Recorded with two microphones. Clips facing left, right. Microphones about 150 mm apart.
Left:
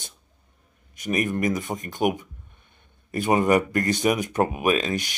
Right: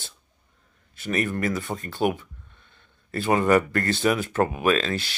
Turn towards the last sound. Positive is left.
turn(degrees=15)  # may be behind; listen again after turning